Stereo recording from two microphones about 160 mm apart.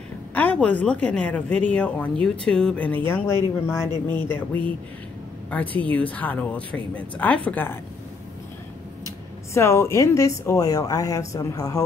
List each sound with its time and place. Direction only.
0.3 s speech: 10° left (ahead or behind)
9.5 s speech: 15° left (ahead or behind)